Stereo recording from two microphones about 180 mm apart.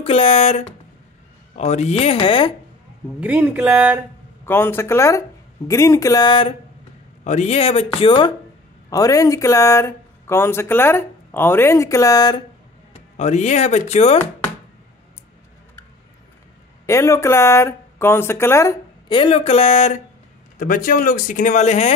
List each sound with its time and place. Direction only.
0.0 s speech: 30° left (ahead or behind)
3.2 s speech: 10° right (ahead or behind)
4.5 s speech: 10° left (ahead or behind)
7.2 s speech: 35° left (ahead or behind)
8.9 s speech: 20° left (ahead or behind)
13.2 s speech: 40° left (ahead or behind)
16.8 s speech: 15° left (ahead or behind)
19.0 s speech: 30° left (ahead or behind)
20.5 s speech: 50° left (ahead or behind)